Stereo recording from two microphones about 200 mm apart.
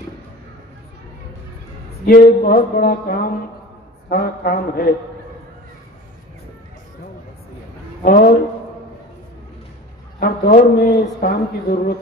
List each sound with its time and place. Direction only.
2.0 s a man's voice: 45° left (ahead or behind)
8.0 s a man's voice: 45° left (ahead or behind)
10.2 s a man's voice: 45° left (ahead or behind)